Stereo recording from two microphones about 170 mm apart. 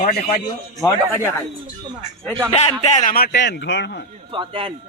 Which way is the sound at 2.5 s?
35° left (ahead or behind).